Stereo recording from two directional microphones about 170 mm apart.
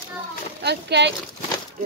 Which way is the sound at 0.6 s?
80° right.